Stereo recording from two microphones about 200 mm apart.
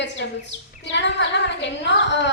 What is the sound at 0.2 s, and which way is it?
Speech, 60° left (ahead or behind).